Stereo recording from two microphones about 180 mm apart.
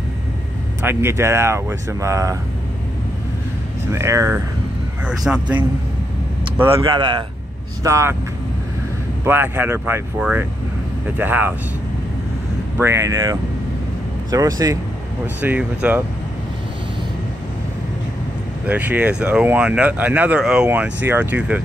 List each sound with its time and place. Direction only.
0.8 s speech: 15° right (ahead or behind)
3.9 s speech: 15° right (ahead or behind)
5.0 s speech: 5° right (ahead or behind)
6.8 s speech: 25° right (ahead or behind)
9.2 s speech: 10° right (ahead or behind)
12.7 s speech: 15° right (ahead or behind)
15.4 s speech: 10° right (ahead or behind)
18.7 s speech: 10° right (ahead or behind)